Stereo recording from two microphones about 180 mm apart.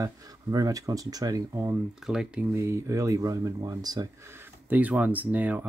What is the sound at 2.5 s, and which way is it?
Speech, 15° right (ahead or behind).